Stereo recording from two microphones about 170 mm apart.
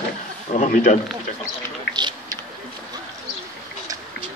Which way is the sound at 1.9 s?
25° right (ahead or behind).